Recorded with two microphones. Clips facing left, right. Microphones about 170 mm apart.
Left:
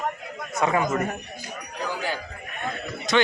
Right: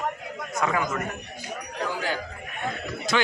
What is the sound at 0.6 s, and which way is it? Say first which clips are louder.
Speech: left 4 dB; 25° left (ahead or behind).